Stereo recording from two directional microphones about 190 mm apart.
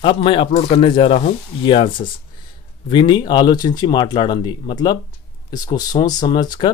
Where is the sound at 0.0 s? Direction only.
25° left (ahead or behind).